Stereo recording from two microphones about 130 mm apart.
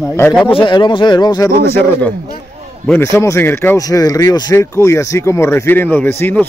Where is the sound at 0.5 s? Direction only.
40° left (ahead or behind).